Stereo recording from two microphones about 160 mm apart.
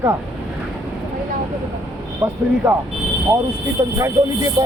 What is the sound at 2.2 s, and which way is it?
Speech, 10° right (ahead or behind).